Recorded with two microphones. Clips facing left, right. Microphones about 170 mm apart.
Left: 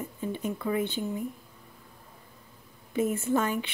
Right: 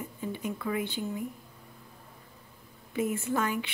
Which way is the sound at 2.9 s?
25° left (ahead or behind).